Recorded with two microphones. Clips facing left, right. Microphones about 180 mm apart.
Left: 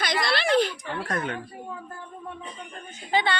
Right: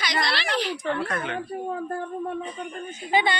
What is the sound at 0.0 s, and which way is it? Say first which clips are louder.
A woman's voice: left 2 dB; 50° left (ahead or behind).